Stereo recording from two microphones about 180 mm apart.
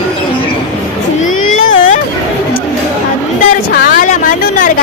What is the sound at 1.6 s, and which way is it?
Vehicle, 90° left.